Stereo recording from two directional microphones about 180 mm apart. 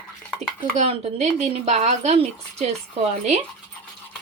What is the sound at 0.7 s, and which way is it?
Speech, 35° right (ahead or behind).